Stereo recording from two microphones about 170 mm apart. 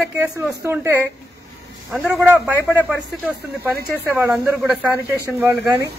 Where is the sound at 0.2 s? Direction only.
15° right (ahead or behind).